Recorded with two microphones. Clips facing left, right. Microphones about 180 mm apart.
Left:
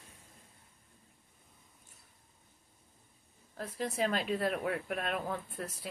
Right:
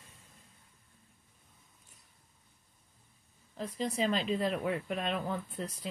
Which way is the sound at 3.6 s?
5° left (ahead or behind).